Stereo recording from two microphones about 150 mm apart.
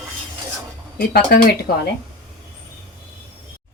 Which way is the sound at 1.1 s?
80° left.